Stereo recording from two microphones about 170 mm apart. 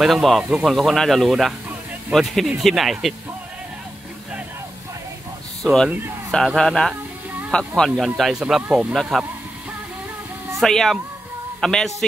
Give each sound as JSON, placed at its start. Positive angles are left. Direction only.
{"t": 0.0, "sound": "speech", "side_deg": 0}
{"t": 5.6, "sound": "speech", "side_deg": 0}
{"t": 10.6, "sound": "speech", "side_deg": 0}